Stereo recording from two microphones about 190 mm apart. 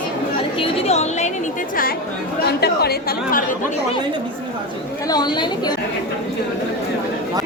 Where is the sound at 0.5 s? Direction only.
30° left (ahead or behind); by 2.0 s 50° left (ahead or behind).